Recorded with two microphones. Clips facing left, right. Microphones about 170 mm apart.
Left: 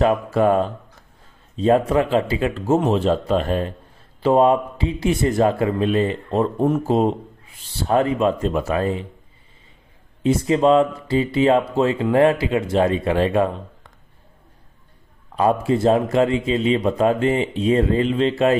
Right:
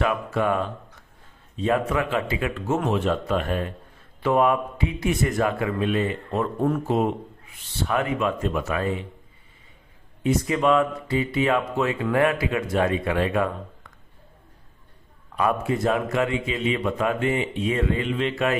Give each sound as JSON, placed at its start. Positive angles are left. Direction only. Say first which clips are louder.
{"t": 0.0, "sound": "a man's voice", "louder": "left 6 dB", "side_deg": 35}
{"t": 10.2, "sound": "speech", "louder": "left 5 dB", "side_deg": 30}
{"t": 15.3, "sound": "a man's voice", "louder": "left 5 dB", "side_deg": 30}